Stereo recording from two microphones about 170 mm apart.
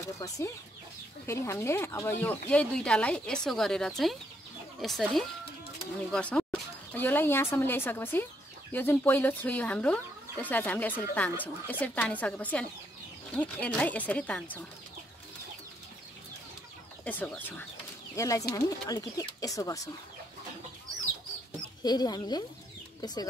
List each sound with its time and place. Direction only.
0.0 s speech: 15° left (ahead or behind)
17.0 s speech: 10° left (ahead or behind)
21.8 s speech: 25° left (ahead or behind)